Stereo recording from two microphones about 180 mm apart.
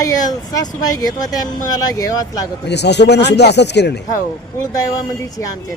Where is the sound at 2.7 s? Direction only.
70° left (ahead or behind).